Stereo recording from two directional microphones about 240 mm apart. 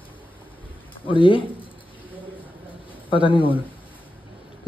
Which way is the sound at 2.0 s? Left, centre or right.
Centre.